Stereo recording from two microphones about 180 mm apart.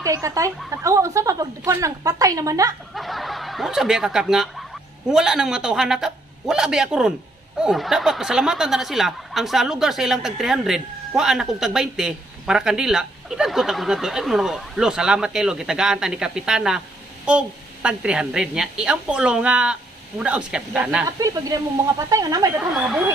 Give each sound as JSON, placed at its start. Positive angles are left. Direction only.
{"t": 0.0, "sound": "a woman's voice", "side_deg": -20}
{"t": 2.9, "sound": "speech", "side_deg": 0}
{"t": 21.2, "sound": "a woman's voice", "side_deg": -20}
{"t": 22.7, "sound": "speech", "side_deg": 0}